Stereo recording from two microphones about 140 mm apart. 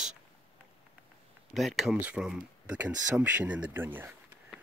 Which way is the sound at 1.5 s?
Centre (ahead or behind).